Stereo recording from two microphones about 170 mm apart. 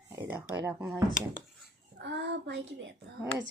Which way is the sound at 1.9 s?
80° right.